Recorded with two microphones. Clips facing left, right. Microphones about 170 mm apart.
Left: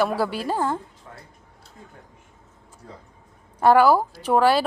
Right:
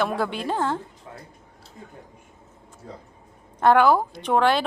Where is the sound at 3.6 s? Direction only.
5° left (ahead or behind).